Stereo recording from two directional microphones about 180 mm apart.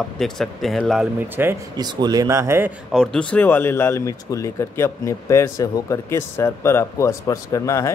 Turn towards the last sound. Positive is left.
turn(degrees=15)  # may be behind; listen again after turning